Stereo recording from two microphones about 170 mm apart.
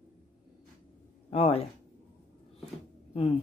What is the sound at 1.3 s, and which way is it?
Speech, 35° left (ahead or behind).